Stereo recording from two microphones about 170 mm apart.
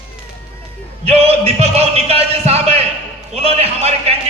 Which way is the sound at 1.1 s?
35° right (ahead or behind).